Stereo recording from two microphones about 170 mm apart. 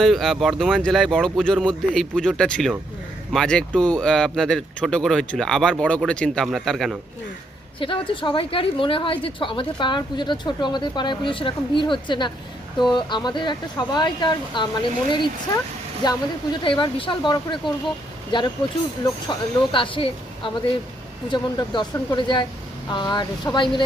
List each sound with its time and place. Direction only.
0.0 s speech: centre (ahead or behind)
7.8 s a woman's voice: 30° left (ahead or behind)
19.7 s a woman's voice: 30° left (ahead or behind)